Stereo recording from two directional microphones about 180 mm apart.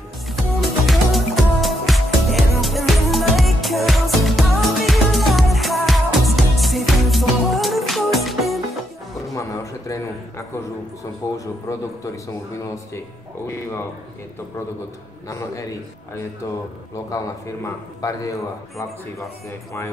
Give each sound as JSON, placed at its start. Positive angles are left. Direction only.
{"t": 0.3, "sound": "music", "side_deg": 0}
{"t": 9.3, "sound": "a sound", "side_deg": 15}
{"t": 11.3, "sound": "a man's voice", "side_deg": 20}
{"t": 15.2, "sound": "a man's voice", "side_deg": 15}
{"t": 18.0, "sound": "a man's voice", "side_deg": 20}